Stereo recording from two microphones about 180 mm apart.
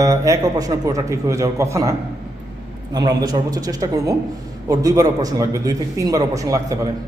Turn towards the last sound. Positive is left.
turn(degrees=-20)  # may be behind; listen again after turning